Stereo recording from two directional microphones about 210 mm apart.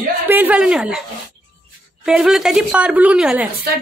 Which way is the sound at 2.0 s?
Centre (ahead or behind).